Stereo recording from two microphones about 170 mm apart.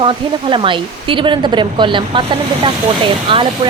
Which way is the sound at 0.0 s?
30° right (ahead or behind).